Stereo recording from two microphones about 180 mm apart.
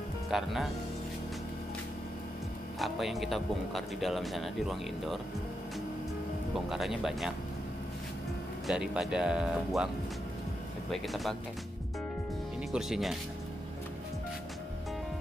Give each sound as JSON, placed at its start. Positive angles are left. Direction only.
{"t": 0.3, "sound": "speech", "side_deg": 0}
{"t": 2.8, "sound": "speech", "side_deg": 0}
{"t": 6.7, "sound": "speech", "side_deg": 0}
{"t": 8.6, "sound": "speech", "side_deg": -5}
{"t": 10.9, "sound": "speech", "side_deg": 0}
{"t": 12.7, "sound": "speech", "side_deg": 0}